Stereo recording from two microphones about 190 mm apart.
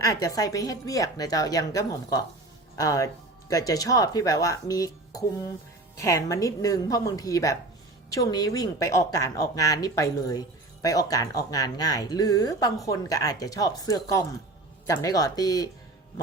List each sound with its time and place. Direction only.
0.0 s speech: 15° left (ahead or behind)